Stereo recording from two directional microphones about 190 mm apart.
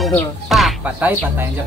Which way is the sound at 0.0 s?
Centre (ahead or behind).